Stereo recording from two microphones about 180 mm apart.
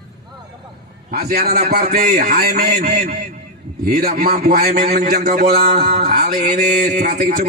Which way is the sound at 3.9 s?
40° right (ahead or behind).